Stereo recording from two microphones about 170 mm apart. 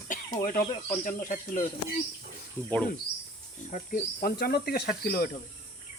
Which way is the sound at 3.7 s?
50° left (ahead or behind).